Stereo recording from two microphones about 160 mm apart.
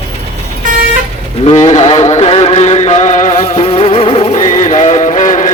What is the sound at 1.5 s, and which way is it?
Music, 45° left (ahead or behind).